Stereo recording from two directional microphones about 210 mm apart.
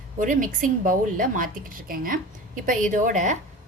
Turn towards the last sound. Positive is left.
turn(degrees=-35)  # may be behind; listen again after turning